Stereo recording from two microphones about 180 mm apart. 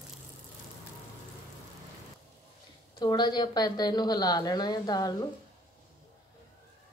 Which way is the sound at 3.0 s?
25° left (ahead or behind).